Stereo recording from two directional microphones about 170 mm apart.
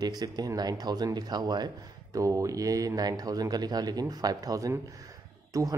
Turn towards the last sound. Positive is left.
turn(degrees=-20)  # may be behind; listen again after turning